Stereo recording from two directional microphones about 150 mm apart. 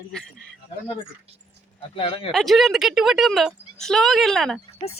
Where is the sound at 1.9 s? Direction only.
40° left (ahead or behind).